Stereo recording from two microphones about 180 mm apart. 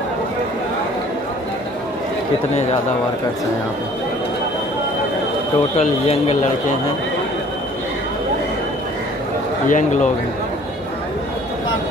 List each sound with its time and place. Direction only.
5.8 s speech: 35° left (ahead or behind)
9.7 s speech: 45° left (ahead or behind)